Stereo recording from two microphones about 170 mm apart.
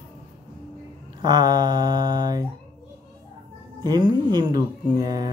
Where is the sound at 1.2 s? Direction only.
25° right (ahead or behind).